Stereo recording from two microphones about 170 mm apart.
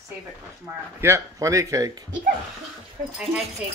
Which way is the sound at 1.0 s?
15° right (ahead or behind).